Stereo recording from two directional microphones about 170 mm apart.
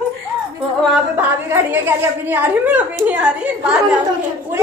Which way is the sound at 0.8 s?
5° right (ahead or behind).